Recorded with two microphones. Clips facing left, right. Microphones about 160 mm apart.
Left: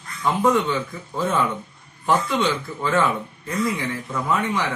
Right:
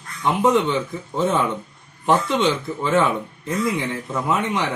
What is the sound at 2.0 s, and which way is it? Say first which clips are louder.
Speech: right 2 dB; 20° right (ahead or behind).